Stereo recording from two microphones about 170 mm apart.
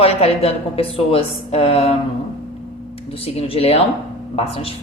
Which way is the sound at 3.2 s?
35° left (ahead or behind).